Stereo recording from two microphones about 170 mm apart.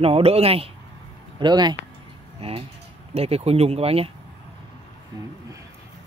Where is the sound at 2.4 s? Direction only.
35° right (ahead or behind).